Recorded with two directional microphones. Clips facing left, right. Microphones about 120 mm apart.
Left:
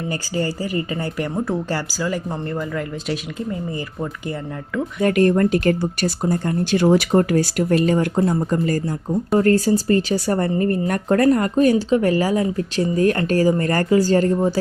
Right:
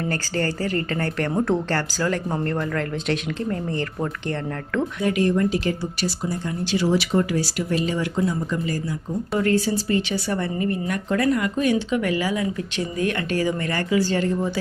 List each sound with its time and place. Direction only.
0.0 s speech: 10° left (ahead or behind)
1.3 s speech: 5° right (ahead or behind)
5.0 s speech: 55° left (ahead or behind)